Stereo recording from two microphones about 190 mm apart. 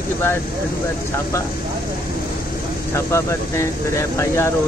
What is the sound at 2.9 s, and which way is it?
Speech, 15° left (ahead or behind).